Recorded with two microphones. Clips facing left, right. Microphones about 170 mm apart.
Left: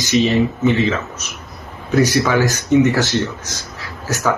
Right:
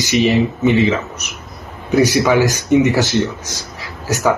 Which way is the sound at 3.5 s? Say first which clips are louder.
Right 1 dB; 15° right (ahead or behind).